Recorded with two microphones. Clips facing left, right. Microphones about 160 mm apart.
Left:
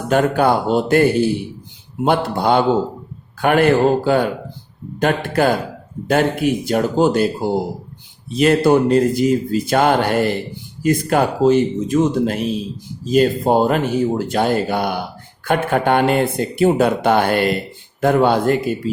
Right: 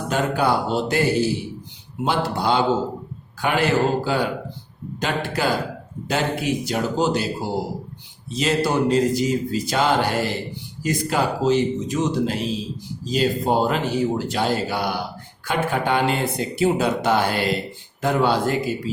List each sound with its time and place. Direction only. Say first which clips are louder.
0.1 s speech: left 6 dB; 55° left (ahead or behind)